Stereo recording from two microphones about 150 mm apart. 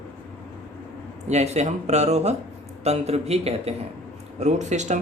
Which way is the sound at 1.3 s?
50° right (ahead or behind).